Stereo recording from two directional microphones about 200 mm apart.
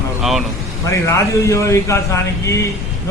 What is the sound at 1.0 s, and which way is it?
A man's voice, 15° left (ahead or behind).